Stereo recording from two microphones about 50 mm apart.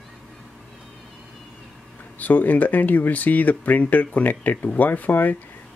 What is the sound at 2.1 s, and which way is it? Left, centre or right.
Speech, left.